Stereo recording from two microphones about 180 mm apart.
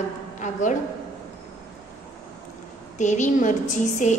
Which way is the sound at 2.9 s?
40° left (ahead or behind).